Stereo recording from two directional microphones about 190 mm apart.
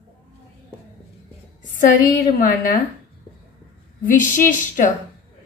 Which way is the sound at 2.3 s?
50° left (ahead or behind).